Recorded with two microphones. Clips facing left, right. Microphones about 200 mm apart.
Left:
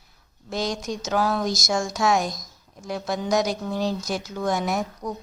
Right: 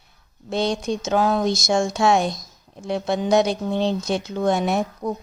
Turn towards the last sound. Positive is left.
turn(degrees=-25)  # may be behind; listen again after turning